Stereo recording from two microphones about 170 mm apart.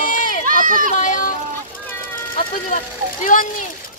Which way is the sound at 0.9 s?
50° left (ahead or behind).